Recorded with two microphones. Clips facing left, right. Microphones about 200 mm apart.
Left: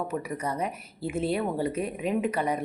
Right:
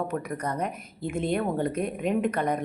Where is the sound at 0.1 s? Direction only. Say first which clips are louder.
Right 1 dB; 5° left (ahead or behind).